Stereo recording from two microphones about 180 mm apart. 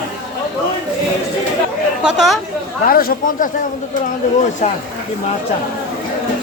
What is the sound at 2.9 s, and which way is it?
Speech, 55° left (ahead or behind).